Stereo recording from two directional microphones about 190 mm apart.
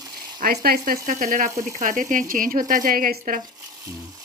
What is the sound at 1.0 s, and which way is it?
A woman's voice, 40° right (ahead or behind).